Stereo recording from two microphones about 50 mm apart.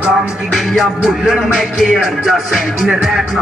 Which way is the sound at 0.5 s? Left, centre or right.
Centre.